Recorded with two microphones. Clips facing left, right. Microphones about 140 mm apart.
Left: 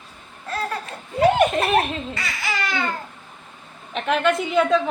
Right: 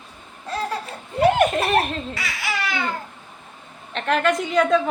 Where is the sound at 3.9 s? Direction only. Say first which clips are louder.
Even; centre (ahead or behind).